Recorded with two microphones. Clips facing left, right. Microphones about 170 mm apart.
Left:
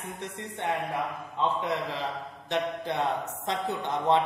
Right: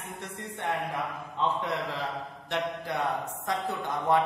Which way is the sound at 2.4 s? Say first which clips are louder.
Left 3 dB; 20° left (ahead or behind).